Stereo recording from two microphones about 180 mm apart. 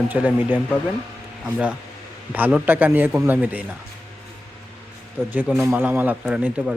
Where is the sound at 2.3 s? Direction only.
10° right (ahead or behind).